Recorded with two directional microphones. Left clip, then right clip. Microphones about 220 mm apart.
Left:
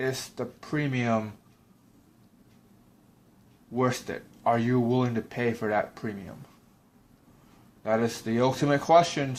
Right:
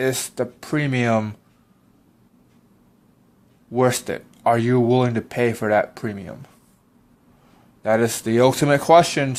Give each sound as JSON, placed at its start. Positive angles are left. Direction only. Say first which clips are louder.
{"t": 0.0, "sound": "speech", "louder": "right 8 dB", "side_deg": -45}
{"t": 3.8, "sound": "speech", "louder": "right 8 dB", "side_deg": -45}
{"t": 7.8, "sound": "speech", "louder": "right 8 dB", "side_deg": -45}